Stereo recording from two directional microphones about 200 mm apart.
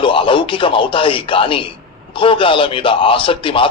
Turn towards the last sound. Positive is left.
turn(degrees=25)  # may be behind; listen again after turning